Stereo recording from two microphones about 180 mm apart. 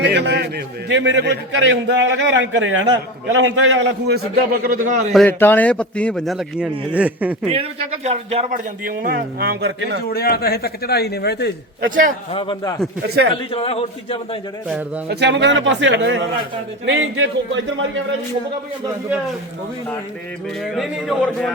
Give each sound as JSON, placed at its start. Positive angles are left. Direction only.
{"t": 0.0, "sound": "a man's voice", "side_deg": -70}
{"t": 4.6, "sound": "a man's voice", "side_deg": -50}
{"t": 5.1, "sound": "a man's voice", "side_deg": 10}
{"t": 7.5, "sound": "a man's voice", "side_deg": -35}
{"t": 8.8, "sound": "speech", "side_deg": -55}
{"t": 10.1, "sound": "speech", "side_deg": 60}
{"t": 11.9, "sound": "a man's voice", "side_deg": -50}
{"t": 12.3, "sound": "a man's voice", "side_deg": 30}
{"t": 13.0, "sound": "a man's voice", "side_deg": -65}
{"t": 13.3, "sound": "a man's voice", "side_deg": 30}
{"t": 14.7, "sound": "speech", "side_deg": -10}
{"t": 15.1, "sound": "a man's voice", "side_deg": -70}
{"t": 20.6, "sound": "a man's voice", "side_deg": 0}